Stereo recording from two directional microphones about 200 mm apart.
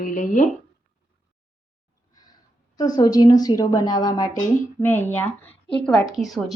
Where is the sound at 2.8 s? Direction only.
20° left (ahead or behind).